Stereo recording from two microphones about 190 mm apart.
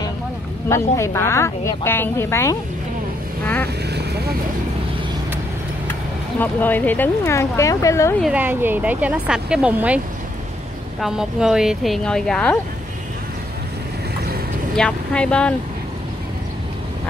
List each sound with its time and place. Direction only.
0.7 s a woman's voice: 15° left (ahead or behind)
3.6 s vehicle: 60° right (ahead or behind)
6.4 s a woman's voice: 10° left (ahead or behind)
8.2 s speech: 5° right (ahead or behind)
14.8 s speech: 5° left (ahead or behind)